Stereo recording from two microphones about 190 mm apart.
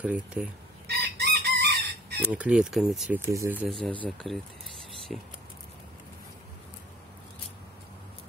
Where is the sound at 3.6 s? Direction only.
Centre (ahead or behind).